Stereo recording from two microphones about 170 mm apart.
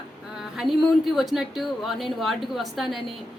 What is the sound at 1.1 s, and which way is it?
A woman's voice, centre (ahead or behind).